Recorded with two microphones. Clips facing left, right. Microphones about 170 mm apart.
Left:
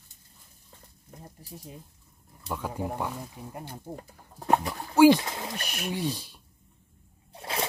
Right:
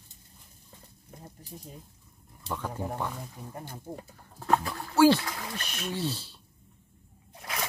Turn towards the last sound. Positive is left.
turn(degrees=30)  # may be behind; listen again after turning